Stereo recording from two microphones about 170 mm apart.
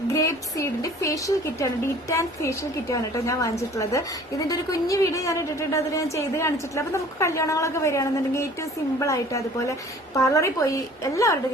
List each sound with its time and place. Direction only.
0.1 s a woman's voice: 20° left (ahead or behind)